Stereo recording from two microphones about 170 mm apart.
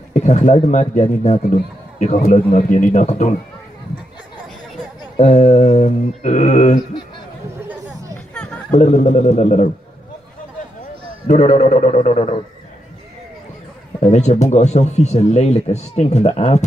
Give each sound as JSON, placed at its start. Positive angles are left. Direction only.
{"t": 0.1, "sound": "a man's voice", "side_deg": 45}
{"t": 5.1, "sound": "a man's voice", "side_deg": 45}
{"t": 8.4, "sound": "a sound", "side_deg": 5}
{"t": 8.7, "sound": "a man's voice", "side_deg": 40}
{"t": 11.2, "sound": "speech", "side_deg": 40}
{"t": 13.9, "sound": "speech", "side_deg": 40}